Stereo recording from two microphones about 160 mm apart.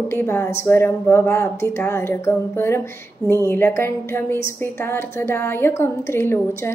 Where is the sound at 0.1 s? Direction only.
15° left (ahead or behind).